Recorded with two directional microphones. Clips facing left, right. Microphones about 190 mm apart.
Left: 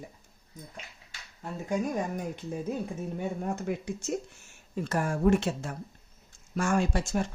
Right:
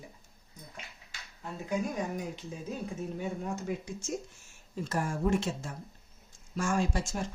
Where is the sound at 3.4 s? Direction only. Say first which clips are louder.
Left 3 dB; 55° left (ahead or behind).